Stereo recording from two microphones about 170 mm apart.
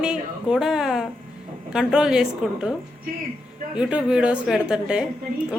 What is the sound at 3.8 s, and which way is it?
A woman's voice, 5° right (ahead or behind).